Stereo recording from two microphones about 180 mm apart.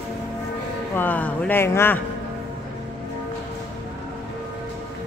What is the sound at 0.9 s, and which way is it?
A woman's voice, 10° left (ahead or behind).